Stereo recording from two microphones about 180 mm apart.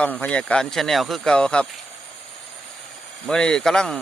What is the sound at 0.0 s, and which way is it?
Speech, 10° left (ahead or behind).